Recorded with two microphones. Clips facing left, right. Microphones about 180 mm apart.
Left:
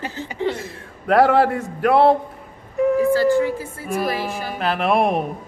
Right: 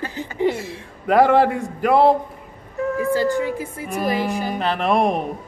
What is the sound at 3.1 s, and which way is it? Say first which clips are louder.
A woman's voice: left 3 dB; 15° right (ahead or behind).